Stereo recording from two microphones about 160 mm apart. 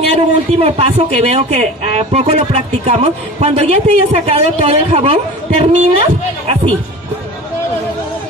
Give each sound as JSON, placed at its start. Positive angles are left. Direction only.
{"t": 0.1, "sound": "speech", "side_deg": -40}